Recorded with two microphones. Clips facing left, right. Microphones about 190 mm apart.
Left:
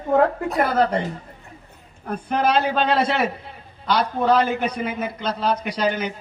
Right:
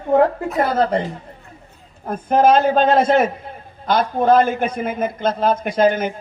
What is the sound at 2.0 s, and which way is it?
A man's voice, 45° right (ahead or behind).